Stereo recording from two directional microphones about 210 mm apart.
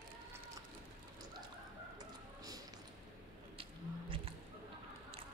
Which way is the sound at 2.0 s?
15° right (ahead or behind).